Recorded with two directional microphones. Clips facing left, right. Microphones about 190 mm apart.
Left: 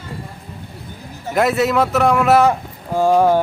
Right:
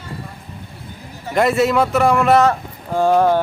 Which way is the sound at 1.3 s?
Centre (ahead or behind).